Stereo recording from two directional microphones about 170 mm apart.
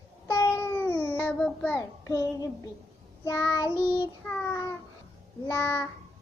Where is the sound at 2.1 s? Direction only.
20° left (ahead or behind).